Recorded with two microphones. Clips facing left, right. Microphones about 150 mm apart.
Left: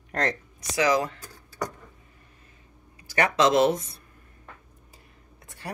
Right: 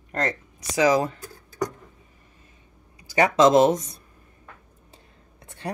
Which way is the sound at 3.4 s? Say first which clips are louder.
Right 4 dB; 45° right (ahead or behind).